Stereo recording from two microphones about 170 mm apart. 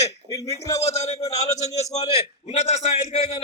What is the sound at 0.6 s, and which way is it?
Speech, 20° left (ahead or behind).